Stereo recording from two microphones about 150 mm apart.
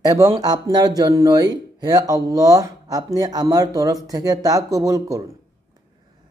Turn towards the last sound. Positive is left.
turn(degrees=-20)  # may be behind; listen again after turning